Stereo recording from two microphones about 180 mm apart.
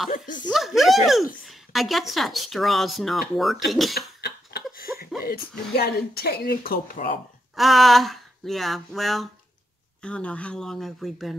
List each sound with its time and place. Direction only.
0.5 s speech: centre (ahead or behind)
4.2 s cough: 65° left (ahead or behind)
5.2 s speech: 55° left (ahead or behind)
7.5 s speech: centre (ahead or behind)